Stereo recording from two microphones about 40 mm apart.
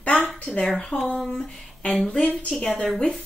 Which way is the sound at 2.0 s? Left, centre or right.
Left.